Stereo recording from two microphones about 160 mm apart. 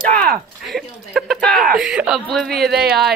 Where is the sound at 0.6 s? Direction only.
Centre (ahead or behind).